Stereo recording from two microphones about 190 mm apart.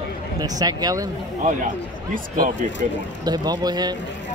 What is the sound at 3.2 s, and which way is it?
Speech, 20° right (ahead or behind).